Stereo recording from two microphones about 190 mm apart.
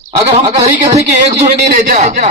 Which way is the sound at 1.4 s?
45° right (ahead or behind).